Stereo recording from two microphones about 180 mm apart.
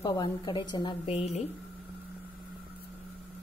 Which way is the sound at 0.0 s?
25° left (ahead or behind).